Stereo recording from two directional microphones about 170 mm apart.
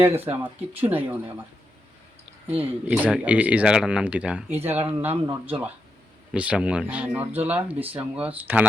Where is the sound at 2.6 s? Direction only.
10° right (ahead or behind).